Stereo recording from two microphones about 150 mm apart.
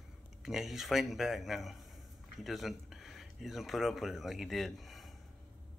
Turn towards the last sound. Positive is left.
turn(degrees=0)  # may be behind; listen again after turning